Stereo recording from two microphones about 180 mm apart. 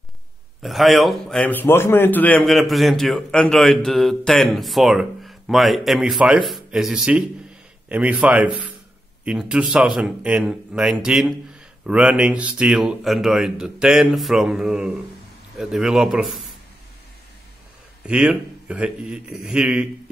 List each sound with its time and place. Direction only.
0.6 s a man's voice: centre (ahead or behind)
18.0 s a man's voice: 5° right (ahead or behind)